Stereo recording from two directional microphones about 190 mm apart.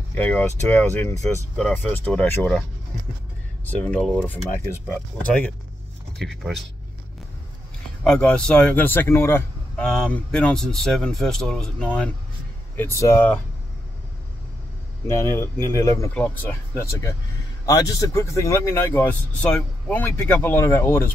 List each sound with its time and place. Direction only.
0.1 s speech: 10° left (ahead or behind)
3.6 s speech: 5° left (ahead or behind)
8.0 s speech: 5° left (ahead or behind)
15.0 s speech: 15° left (ahead or behind)